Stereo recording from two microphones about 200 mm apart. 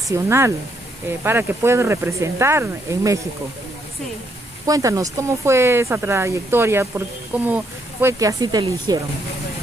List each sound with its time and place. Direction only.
0.1 s speech: 15° right (ahead or behind)
4.6 s speech: 15° right (ahead or behind)